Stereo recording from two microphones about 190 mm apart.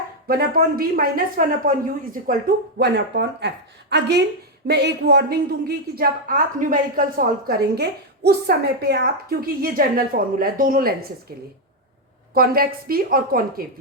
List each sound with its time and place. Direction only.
0.3 s speech: 50° right (ahead or behind)
2.7 s speech: 65° right (ahead or behind); by 10.9 s 50° right (ahead or behind)
12.3 s speech: 50° right (ahead or behind)